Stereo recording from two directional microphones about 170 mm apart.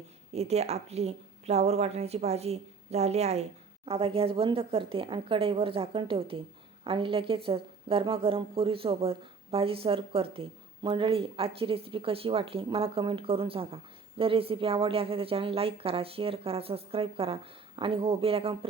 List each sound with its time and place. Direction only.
0.3 s a woman's voice: 40° right (ahead or behind)